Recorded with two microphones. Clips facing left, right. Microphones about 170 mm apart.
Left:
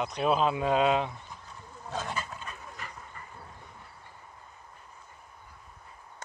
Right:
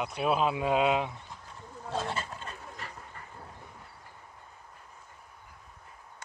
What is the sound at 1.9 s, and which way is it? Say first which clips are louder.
Speech: right 2 dB; 30° right (ahead or behind).